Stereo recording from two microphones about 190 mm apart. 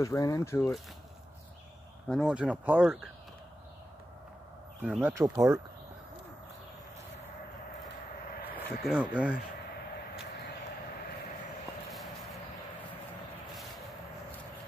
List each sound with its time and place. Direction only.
0.0 s speech: 15° left (ahead or behind)
2.0 s speech: centre (ahead or behind)
4.8 s speech: 5° right (ahead or behind)
5.1 s speech: 15° right (ahead or behind)
8.8 s speech: 5° right (ahead or behind)
11.9 s a sound: centre (ahead or behind)